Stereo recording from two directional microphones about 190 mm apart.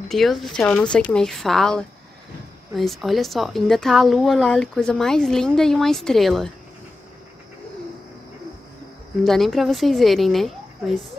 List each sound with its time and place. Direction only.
0.1 s a woman's voice: centre (ahead or behind)
9.2 s a woman's voice: centre (ahead or behind)